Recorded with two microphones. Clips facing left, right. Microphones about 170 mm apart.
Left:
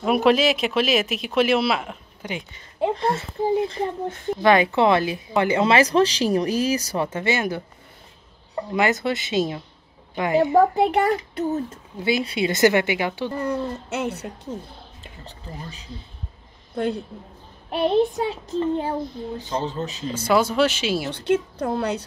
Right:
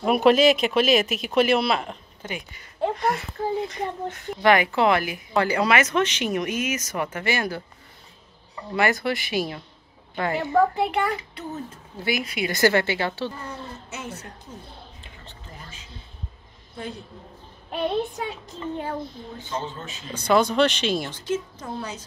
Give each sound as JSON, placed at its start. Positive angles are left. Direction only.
{"t": 0.0, "sound": "speech", "side_deg": 0}
{"t": 2.2, "sound": "speech", "side_deg": 20}
{"t": 8.7, "sound": "speech", "side_deg": 20}
{"t": 10.8, "sound": "child singing", "side_deg": 40}
{"t": 12.0, "sound": "speech", "side_deg": 25}
{"t": 13.4, "sound": "a woman's voice", "side_deg": 65}
{"t": 15.2, "sound": "child singing", "side_deg": 35}
{"t": 17.6, "sound": "child singing", "side_deg": 30}
{"t": 20.2, "sound": "speech", "side_deg": 5}
{"t": 21.1, "sound": "a woman's voice", "side_deg": 65}